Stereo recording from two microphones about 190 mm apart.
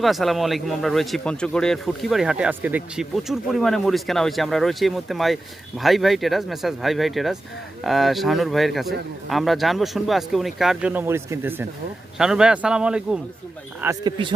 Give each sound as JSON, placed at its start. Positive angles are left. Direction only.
{"t": 0.0, "sound": "speech", "side_deg": 0}
{"t": 13.8, "sound": "speech", "side_deg": -25}